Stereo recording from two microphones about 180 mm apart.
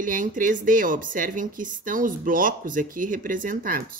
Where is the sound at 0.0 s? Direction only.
45° right (ahead or behind).